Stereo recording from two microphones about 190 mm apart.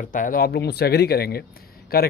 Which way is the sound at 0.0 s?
45° left (ahead or behind).